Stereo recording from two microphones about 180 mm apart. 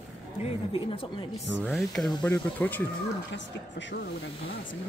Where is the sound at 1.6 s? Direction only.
Centre (ahead or behind).